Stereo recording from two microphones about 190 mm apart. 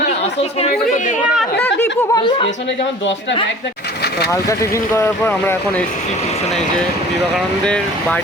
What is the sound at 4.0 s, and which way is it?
Vehicle, 60° left (ahead or behind).